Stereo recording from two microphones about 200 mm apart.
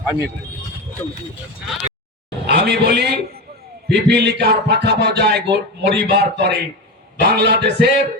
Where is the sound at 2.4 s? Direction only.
55° right (ahead or behind).